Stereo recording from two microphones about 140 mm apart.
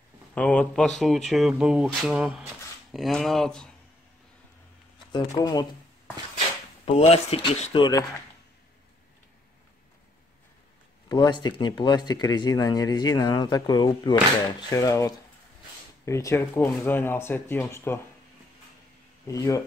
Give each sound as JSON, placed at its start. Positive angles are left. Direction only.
{"t": 0.3, "sound": "speech", "side_deg": 10}
{"t": 5.1, "sound": "speech", "side_deg": 30}
{"t": 6.9, "sound": "speech", "side_deg": 45}
{"t": 11.1, "sound": "speech", "side_deg": 30}
{"t": 19.2, "sound": "speech", "side_deg": 25}